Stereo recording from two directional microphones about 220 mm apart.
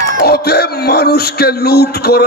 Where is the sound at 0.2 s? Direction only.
45° left (ahead or behind).